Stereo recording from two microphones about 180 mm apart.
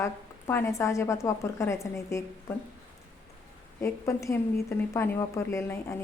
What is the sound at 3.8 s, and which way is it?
A woman's voice, 15° left (ahead or behind).